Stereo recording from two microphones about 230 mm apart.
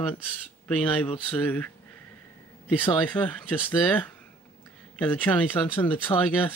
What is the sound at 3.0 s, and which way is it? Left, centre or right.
Speech, centre.